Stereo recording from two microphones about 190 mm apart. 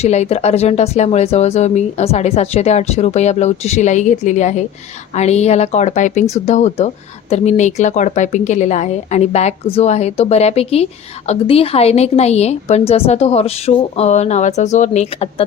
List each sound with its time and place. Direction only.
0.0 s speech: 35° left (ahead or behind)